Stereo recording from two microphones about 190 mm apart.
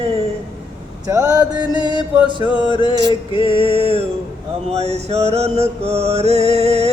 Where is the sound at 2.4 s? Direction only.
25° left (ahead or behind).